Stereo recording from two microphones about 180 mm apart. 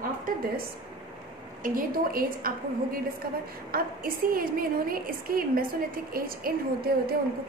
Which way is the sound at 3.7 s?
55° right (ahead or behind).